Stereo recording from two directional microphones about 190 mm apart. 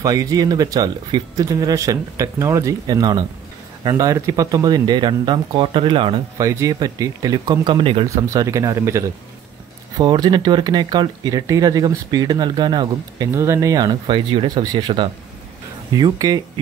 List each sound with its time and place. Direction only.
0.0 s speech: 20° right (ahead or behind)